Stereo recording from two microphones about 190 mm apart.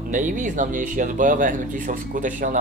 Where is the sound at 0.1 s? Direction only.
40° right (ahead or behind).